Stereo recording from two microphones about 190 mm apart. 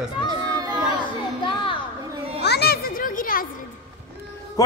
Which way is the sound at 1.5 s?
25° left (ahead or behind).